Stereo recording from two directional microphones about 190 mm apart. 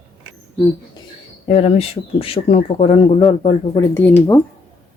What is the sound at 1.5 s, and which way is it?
Speech, 30° left (ahead or behind).